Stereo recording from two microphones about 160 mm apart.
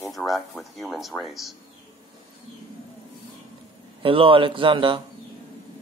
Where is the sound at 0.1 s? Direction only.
Centre (ahead or behind).